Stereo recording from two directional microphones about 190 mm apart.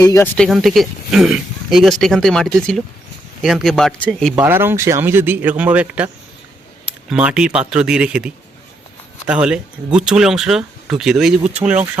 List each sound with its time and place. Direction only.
0.0 s speech: 15° left (ahead or behind)
0.3 s speech: centre (ahead or behind)
4.4 s a man's voice: 10° right (ahead or behind)
7.1 s speech: 5° right (ahead or behind)